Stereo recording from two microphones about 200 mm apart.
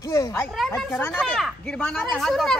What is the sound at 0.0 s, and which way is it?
Speech, 15° left (ahead or behind).